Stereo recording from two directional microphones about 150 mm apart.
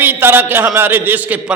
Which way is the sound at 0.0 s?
15° right (ahead or behind).